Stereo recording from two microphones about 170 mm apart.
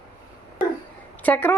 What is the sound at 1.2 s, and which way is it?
Speech, 10° left (ahead or behind).